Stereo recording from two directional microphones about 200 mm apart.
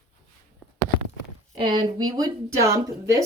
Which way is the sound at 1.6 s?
25° right (ahead or behind).